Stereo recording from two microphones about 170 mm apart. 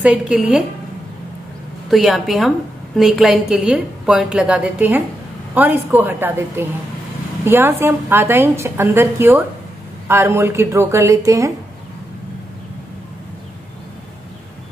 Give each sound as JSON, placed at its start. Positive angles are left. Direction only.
{"t": 0.0, "sound": "a woman's voice", "side_deg": -5}
{"t": 1.9, "sound": "a woman's voice", "side_deg": 0}